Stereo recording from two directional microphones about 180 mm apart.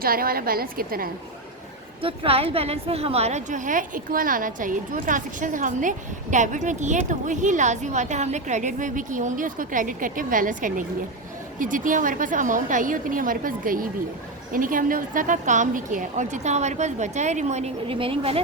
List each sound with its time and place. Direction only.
0.0 s a woman's voice: 55° right (ahead or behind)
2.0 s a woman's voice: 30° right (ahead or behind)